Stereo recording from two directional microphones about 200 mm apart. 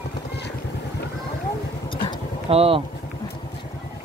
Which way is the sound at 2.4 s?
30° right (ahead or behind).